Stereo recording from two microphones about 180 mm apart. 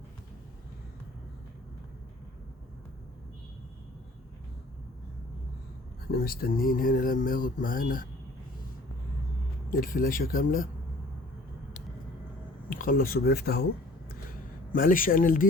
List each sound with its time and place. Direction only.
6.1 s speech: 55° left (ahead or behind)
9.6 s speech: 50° left (ahead or behind)
12.7 s speech: 50° left (ahead or behind)
14.7 s speech: 50° left (ahead or behind)